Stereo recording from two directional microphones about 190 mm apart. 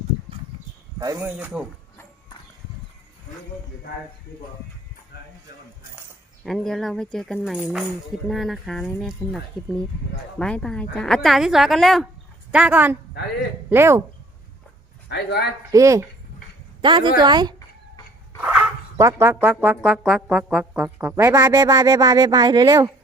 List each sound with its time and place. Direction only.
0.9 s speech: 20° right (ahead or behind)
6.4 s speech: centre (ahead or behind)
15.1 s a man's voice: 60° left (ahead or behind)
15.7 s a woman's voice: 15° right (ahead or behind)
18.3 s speech: 10° right (ahead or behind)